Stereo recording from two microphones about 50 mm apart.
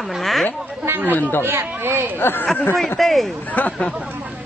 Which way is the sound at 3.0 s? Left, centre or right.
Centre.